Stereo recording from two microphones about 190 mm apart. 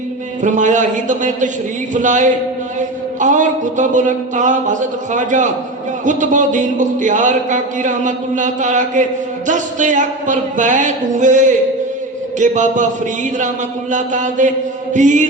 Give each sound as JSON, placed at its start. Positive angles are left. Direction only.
{"t": 0.4, "sound": "a man's voice", "side_deg": -40}
{"t": 13.9, "sound": "a man's voice", "side_deg": -40}